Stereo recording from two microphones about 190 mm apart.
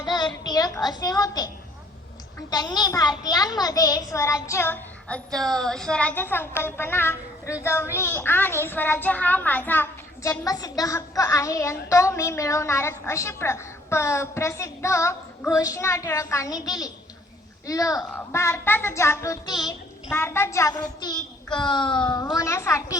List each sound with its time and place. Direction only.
0.0 s a child's voice: 20° left (ahead or behind)
2.5 s a child's voice: 20° left (ahead or behind)
21.0 s a child's voice: 20° left (ahead or behind)